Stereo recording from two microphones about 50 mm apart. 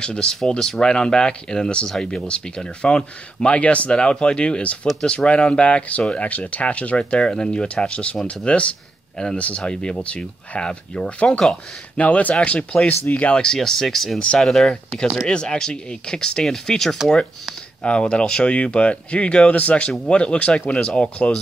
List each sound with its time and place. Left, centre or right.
0.0 s speech: centre
12.0 s speech: left
12.4 s speech: left
13.6 s speech: centre
15.2 s speech: centre
17.8 s speech: left